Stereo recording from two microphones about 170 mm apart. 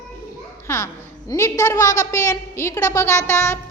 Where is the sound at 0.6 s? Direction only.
15° left (ahead or behind).